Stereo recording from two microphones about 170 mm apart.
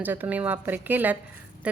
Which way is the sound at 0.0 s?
10° right (ahead or behind).